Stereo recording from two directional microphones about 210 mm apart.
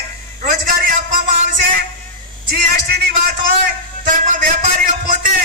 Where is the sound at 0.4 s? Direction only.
40° right (ahead or behind).